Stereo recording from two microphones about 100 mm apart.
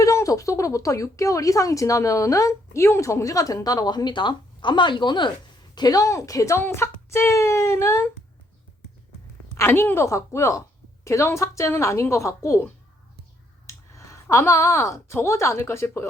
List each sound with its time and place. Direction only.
0.0 s a woman's voice: 30° left (ahead or behind)
9.6 s a woman's voice: 25° left (ahead or behind)
13.7 s speech: 30° left (ahead or behind)